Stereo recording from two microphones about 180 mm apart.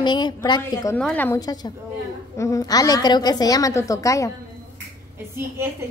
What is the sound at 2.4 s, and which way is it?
A woman's voice, 20° left (ahead or behind).